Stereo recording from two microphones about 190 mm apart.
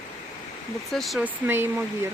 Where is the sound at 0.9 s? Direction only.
Centre (ahead or behind).